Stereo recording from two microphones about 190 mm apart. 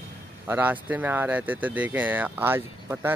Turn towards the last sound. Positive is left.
turn(degrees=-10)  # may be behind; listen again after turning